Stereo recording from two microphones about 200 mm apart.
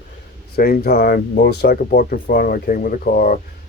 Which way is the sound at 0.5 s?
50° left (ahead or behind).